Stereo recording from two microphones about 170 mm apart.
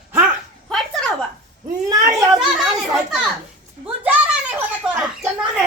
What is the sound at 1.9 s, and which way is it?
Children playing, 20° right (ahead or behind).